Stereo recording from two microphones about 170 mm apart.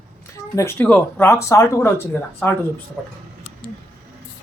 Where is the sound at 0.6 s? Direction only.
15° left (ahead or behind).